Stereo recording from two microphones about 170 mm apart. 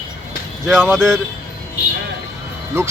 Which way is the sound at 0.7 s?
10° right (ahead or behind).